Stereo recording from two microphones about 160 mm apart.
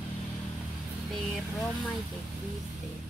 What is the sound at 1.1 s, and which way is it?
Speech, centre (ahead or behind).